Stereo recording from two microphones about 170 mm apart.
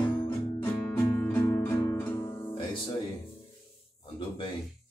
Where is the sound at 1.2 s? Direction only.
10° left (ahead or behind).